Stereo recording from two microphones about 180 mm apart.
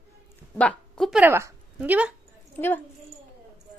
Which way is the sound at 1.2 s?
10° right (ahead or behind).